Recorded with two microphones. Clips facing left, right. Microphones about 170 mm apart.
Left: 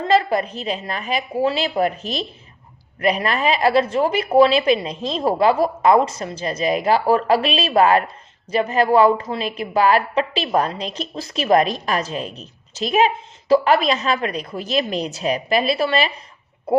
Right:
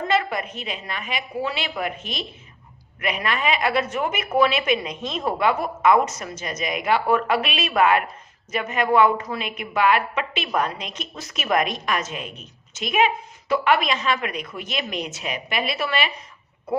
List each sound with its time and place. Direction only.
0.1 s a woman's voice: 35° left (ahead or behind)